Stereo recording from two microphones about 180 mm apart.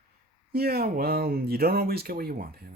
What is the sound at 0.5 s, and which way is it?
Speech, 60° right (ahead or behind).